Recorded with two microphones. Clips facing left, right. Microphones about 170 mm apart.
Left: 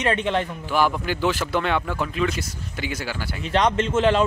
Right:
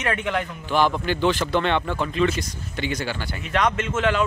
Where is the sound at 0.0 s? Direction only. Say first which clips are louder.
Left 3 dB; 30° left (ahead or behind).